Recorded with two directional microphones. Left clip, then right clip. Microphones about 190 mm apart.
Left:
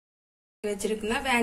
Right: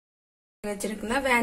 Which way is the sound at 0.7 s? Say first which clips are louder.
Even; 30° right (ahead or behind).